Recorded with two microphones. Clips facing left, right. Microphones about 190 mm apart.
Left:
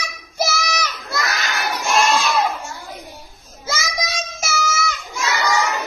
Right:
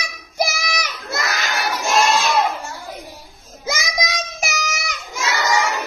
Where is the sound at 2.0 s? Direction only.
50° right (ahead or behind).